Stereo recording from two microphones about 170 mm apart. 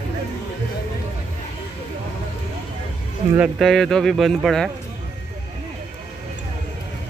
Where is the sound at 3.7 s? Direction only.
5° left (ahead or behind).